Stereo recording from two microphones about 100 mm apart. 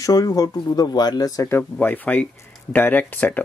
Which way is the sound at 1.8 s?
15° left (ahead or behind).